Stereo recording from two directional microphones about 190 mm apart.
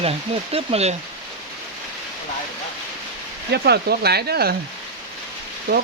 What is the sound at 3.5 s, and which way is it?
Speech, 60° right (ahead or behind).